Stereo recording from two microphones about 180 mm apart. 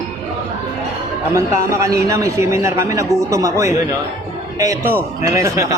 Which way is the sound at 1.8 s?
15° right (ahead or behind).